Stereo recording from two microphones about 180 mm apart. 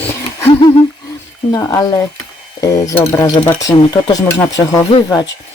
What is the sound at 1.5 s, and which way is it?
Speech, 15° left (ahead or behind).